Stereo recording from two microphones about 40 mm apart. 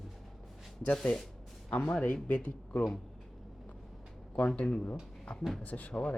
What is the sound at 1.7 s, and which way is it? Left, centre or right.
Speech, left.